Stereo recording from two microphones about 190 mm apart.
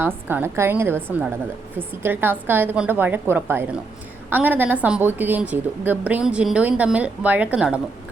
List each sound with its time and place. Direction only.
0.0 s a woman's voice: 10° right (ahead or behind)